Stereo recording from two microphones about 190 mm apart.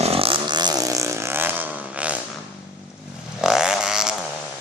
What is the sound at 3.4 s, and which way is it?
Vehicle, 5° right (ahead or behind).